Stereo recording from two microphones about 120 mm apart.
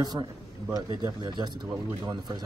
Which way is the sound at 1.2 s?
40° right (ahead or behind).